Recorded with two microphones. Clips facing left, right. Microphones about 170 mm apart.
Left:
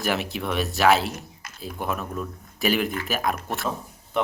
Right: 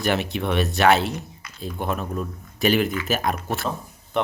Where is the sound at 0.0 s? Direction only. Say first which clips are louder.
Right 3 dB; centre (ahead or behind).